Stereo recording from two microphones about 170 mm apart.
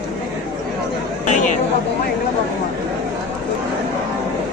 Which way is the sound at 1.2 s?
45° left (ahead or behind).